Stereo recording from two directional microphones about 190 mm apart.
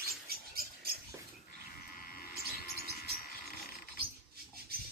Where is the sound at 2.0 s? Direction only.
50° left (ahead or behind).